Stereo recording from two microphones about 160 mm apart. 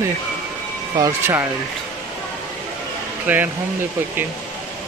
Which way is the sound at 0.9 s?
20° right (ahead or behind).